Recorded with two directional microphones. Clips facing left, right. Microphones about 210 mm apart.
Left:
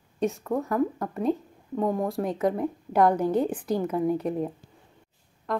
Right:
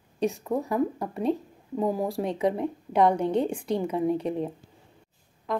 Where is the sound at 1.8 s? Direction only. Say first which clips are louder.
Even; 5° right (ahead or behind).